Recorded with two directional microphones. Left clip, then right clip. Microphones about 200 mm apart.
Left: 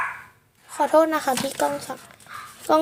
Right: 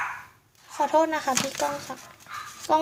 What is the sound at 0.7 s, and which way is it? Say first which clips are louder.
Speech: left 4 dB; 25° left (ahead or behind).